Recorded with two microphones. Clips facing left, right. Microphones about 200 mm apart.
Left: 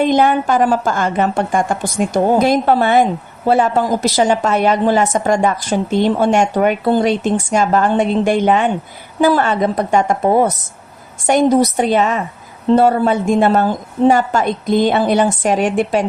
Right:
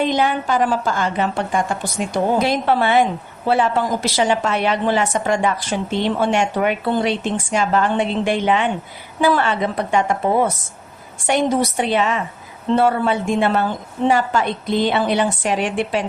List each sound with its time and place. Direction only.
0.0 s a woman's voice: 50° left (ahead or behind)